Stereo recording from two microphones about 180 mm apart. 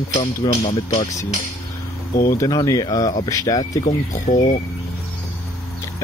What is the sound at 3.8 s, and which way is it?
Speech, 40° left (ahead or behind).